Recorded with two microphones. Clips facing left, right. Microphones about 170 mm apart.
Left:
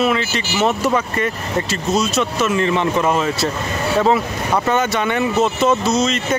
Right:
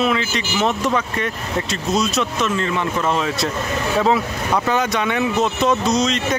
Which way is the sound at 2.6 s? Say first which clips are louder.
Left 4 dB; 20° left (ahead or behind).